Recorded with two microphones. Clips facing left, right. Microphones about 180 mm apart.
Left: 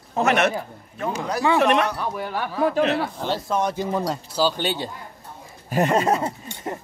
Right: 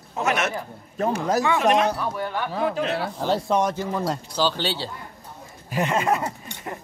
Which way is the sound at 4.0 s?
5° left (ahead or behind).